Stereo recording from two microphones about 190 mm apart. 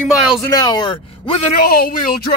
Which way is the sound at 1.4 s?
50° left (ahead or behind).